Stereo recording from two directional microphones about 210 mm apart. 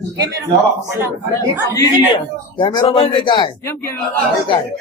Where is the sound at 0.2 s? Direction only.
15° right (ahead or behind).